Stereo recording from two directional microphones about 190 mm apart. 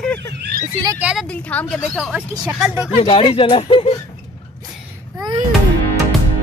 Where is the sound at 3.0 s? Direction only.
30° left (ahead or behind).